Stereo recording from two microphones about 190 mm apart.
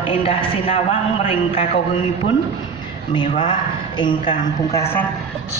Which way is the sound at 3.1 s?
25° left (ahead or behind).